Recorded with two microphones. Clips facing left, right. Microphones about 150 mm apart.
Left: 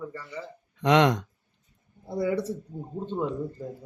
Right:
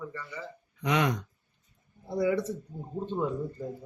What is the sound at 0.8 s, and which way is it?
Speech, 90° left.